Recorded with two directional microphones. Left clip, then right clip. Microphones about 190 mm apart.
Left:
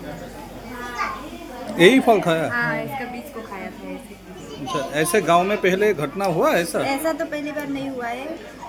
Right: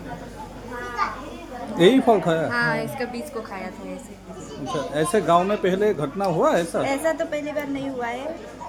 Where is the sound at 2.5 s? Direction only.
60° right (ahead or behind).